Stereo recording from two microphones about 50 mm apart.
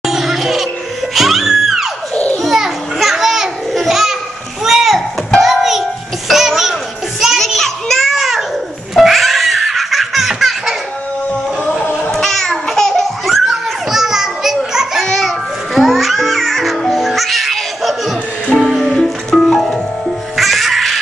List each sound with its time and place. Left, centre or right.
0.0 s music: centre
2.3 s a sound: centre
5.4 s music: centre
7.3 s a sound: centre
8.2 s babbling: centre
8.9 s laughter: centre
11.8 s music: left
12.1 s babbling: centre
13.5 s children playing: centre
15.1 s music: centre